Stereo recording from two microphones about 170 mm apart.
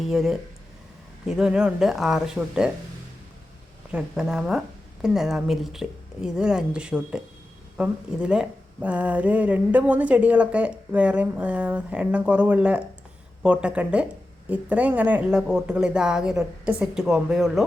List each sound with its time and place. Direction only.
0.0 s speech: centre (ahead or behind)
3.9 s speech: 5° right (ahead or behind)